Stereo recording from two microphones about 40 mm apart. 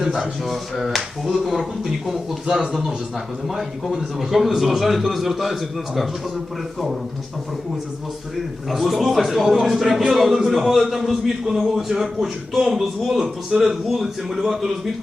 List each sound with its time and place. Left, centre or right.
0.0 s speech: centre
0.4 s a man's voice: centre
8.7 s a man's voice: centre